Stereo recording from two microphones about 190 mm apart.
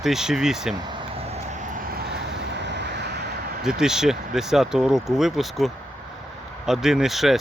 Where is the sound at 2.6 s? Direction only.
65° right (ahead or behind).